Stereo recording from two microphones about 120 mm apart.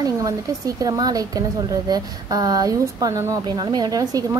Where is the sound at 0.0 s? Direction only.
30° right (ahead or behind).